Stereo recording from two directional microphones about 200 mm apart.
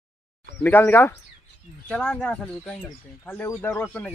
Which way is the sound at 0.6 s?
10° left (ahead or behind).